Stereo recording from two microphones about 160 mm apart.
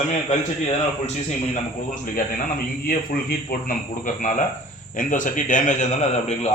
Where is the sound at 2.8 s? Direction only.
65° left (ahead or behind).